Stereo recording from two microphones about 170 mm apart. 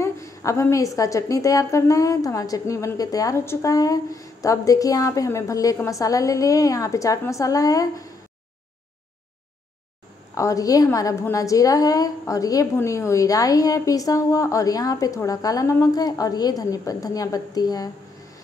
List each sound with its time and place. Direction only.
0.0 s a woman's voice: 15° left (ahead or behind)
10.3 s a woman's voice: 20° left (ahead or behind)